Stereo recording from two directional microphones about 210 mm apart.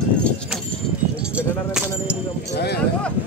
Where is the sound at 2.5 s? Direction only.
50° left (ahead or behind).